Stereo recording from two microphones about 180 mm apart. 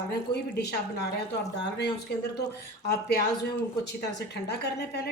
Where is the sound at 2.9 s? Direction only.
60° left (ahead or behind).